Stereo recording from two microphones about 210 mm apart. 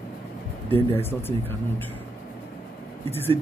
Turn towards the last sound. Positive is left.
turn(degrees=10)  # may be behind; listen again after turning